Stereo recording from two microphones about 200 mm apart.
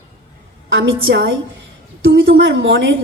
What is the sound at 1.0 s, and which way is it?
A woman's voice, 65° right (ahead or behind).